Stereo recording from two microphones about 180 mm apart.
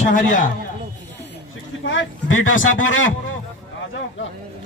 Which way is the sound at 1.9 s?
90° left.